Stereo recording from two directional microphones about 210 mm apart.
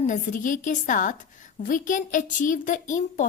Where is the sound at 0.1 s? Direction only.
40° left (ahead or behind).